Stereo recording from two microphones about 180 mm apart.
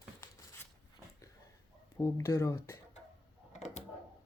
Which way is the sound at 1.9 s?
15° left (ahead or behind).